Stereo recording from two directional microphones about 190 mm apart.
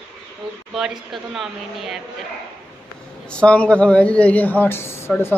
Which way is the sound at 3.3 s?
5° left (ahead or behind).